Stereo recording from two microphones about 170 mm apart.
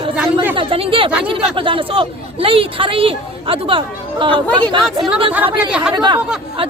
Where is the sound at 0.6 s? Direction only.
35° right (ahead or behind).